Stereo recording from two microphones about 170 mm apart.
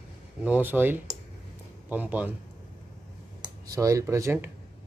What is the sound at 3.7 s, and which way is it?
Speech, 20° right (ahead or behind).